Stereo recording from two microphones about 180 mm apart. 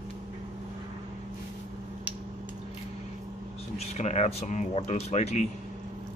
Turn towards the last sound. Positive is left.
turn(degrees=40)  # may be behind; listen again after turning